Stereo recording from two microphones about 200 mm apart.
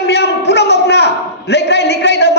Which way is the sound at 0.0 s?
60° left (ahead or behind).